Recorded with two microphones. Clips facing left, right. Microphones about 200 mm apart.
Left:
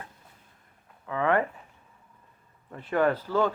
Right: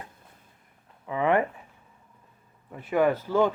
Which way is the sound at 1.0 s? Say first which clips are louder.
Right 2 dB; 15° right (ahead or behind).